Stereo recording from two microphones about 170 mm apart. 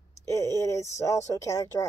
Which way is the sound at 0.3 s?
20° left (ahead or behind).